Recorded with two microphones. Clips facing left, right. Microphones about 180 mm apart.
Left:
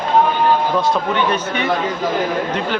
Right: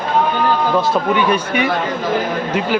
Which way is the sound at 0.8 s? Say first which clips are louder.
Right 2 dB; 10° right (ahead or behind).